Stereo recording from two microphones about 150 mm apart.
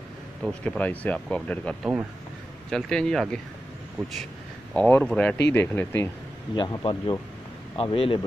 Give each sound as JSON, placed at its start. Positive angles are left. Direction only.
{"t": 0.4, "sound": "speech", "side_deg": 5}
{"t": 4.7, "sound": "speech", "side_deg": 10}
{"t": 6.5, "sound": "speech", "side_deg": 30}